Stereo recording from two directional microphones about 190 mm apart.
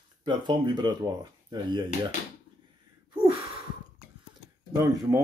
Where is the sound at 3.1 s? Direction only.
25° right (ahead or behind).